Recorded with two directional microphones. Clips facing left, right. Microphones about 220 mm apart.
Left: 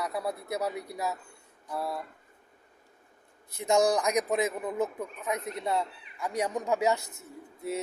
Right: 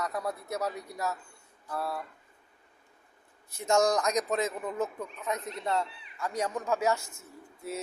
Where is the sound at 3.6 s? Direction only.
15° left (ahead or behind).